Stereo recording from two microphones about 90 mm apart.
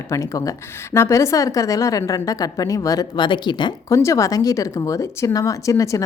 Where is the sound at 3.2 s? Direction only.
60° left (ahead or behind).